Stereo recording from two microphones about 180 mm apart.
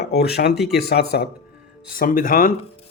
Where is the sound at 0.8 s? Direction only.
60° left (ahead or behind).